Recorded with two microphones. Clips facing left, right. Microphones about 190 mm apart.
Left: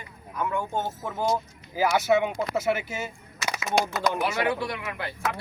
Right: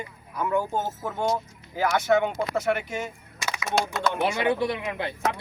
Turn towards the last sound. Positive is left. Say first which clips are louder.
# right 5 dB
turn(degrees=-25)  # may be behind; listen again after turning